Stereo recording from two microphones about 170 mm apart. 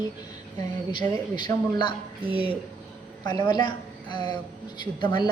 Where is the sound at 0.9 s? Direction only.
25° left (ahead or behind).